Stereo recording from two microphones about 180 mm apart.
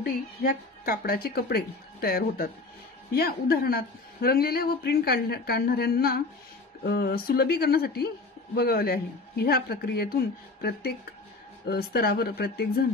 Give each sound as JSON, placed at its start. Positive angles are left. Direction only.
{"t": 0.0, "sound": "a woman's voice", "side_deg": 55}